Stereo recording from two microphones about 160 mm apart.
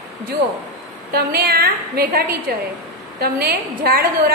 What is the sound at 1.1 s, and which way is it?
A woman's voice, 70° right (ahead or behind).